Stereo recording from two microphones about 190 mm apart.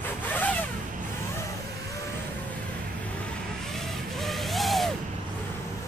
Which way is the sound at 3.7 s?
Centre (ahead or behind).